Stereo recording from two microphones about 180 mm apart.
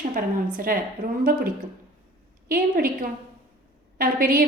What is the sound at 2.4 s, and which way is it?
A woman's voice, 55° right (ahead or behind).